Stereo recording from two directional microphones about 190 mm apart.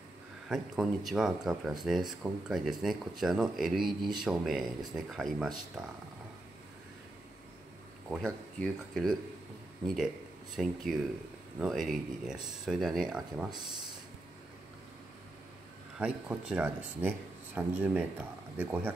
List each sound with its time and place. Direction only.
0.5 s speech: centre (ahead or behind)
8.1 s speech: centre (ahead or behind)
10.5 s speech: centre (ahead or behind)
16.0 s speech: 5° right (ahead or behind)